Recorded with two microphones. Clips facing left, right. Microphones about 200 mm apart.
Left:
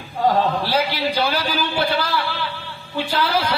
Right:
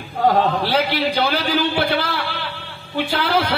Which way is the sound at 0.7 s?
60° right (ahead or behind).